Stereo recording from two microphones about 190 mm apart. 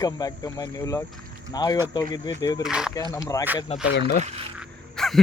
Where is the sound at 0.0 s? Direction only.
20° left (ahead or behind).